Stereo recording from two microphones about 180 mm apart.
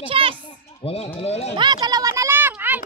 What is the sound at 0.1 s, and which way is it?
Children playing, 30° right (ahead or behind).